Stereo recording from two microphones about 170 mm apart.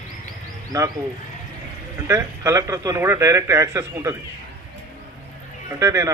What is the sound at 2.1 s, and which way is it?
A man's voice, 20° right (ahead or behind).